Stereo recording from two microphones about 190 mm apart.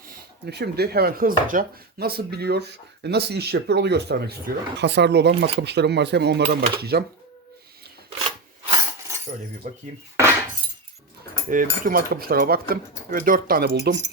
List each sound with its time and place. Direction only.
0.0 s speech: 55° right (ahead or behind)
9.6 s speech: 40° right (ahead or behind)
11.4 s speech: 45° right (ahead or behind)
13.9 s speech: 60° right (ahead or behind)